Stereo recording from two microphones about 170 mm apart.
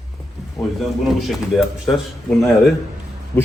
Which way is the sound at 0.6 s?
15° left (ahead or behind).